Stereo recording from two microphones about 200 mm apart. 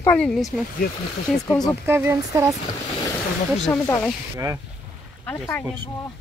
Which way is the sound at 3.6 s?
10° left (ahead or behind).